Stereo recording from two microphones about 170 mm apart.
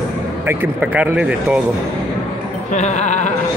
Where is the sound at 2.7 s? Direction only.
45° left (ahead or behind).